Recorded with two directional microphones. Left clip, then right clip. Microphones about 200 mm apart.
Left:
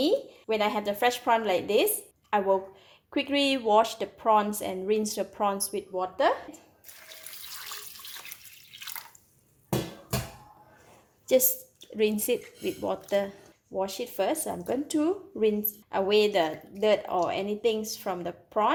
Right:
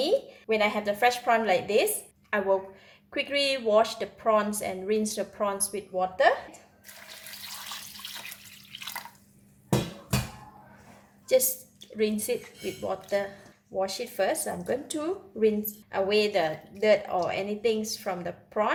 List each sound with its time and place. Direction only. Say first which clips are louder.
0.0 s a woman's voice: even; 30° left (ahead or behind)
8.8 s drip: right 3 dB; 5° right (ahead or behind)
11.9 s a woman's voice: left 2 dB; 35° left (ahead or behind)
13.7 s a woman's voice: right 1 dB; 25° left (ahead or behind)